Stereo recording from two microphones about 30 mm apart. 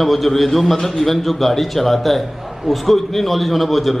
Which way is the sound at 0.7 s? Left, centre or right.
Centre.